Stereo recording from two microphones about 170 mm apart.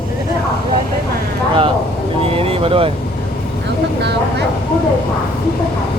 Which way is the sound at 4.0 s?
90° right.